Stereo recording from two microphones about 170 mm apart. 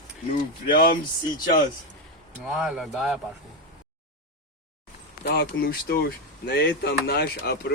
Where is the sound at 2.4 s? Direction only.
5° right (ahead or behind).